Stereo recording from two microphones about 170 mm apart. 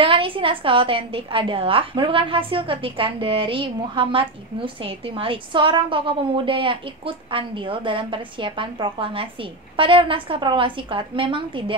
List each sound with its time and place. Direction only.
0.0 s a woman's voice: 30° right (ahead or behind)